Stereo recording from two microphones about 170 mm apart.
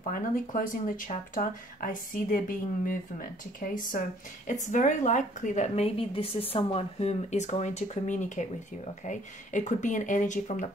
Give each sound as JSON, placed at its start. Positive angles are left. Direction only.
{"t": 0.1, "sound": "a woman's voice", "side_deg": 50}